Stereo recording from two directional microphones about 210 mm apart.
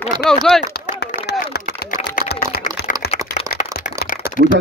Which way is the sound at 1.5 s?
50° left (ahead or behind).